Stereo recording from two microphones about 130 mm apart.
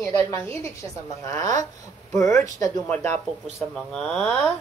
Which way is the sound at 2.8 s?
10° left (ahead or behind).